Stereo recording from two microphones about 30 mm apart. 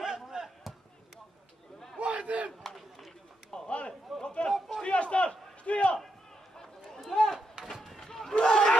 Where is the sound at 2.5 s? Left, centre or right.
Centre.